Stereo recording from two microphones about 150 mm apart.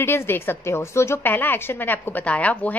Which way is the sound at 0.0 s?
15° left (ahead or behind).